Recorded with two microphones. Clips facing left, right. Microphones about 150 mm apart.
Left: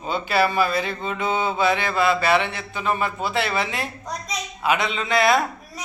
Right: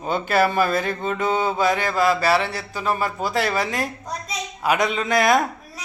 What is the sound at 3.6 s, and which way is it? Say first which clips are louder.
Music: right 2 dB; 45° right (ahead or behind).